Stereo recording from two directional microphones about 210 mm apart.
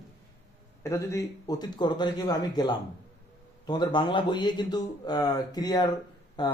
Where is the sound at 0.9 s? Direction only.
15° left (ahead or behind).